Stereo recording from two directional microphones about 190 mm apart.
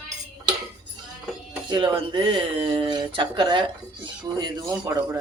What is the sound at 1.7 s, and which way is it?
Speech, 25° right (ahead or behind).